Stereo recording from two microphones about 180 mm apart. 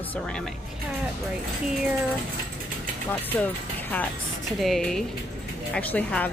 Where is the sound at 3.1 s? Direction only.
10° left (ahead or behind).